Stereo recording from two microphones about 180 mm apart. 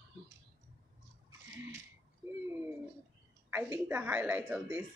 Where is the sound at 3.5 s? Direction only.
10° right (ahead or behind).